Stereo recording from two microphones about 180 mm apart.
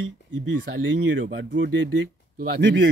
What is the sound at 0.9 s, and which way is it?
Speech, 90° right.